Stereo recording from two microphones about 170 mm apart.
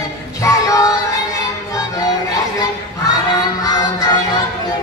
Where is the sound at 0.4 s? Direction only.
20° left (ahead or behind).